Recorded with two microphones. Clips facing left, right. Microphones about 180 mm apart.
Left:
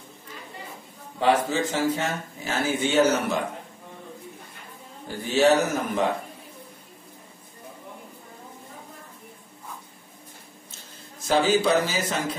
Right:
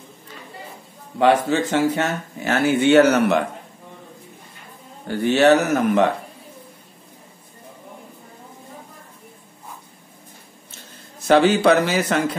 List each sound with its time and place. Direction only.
1.2 s speech: 70° right (ahead or behind)
5.0 s speech: 65° right (ahead or behind)
11.2 s speech: 65° right (ahead or behind)